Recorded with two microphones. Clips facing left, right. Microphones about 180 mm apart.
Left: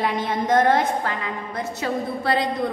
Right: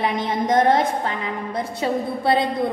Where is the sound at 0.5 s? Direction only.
25° right (ahead or behind).